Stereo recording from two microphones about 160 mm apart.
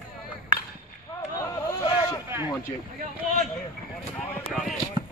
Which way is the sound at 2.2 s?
15° right (ahead or behind).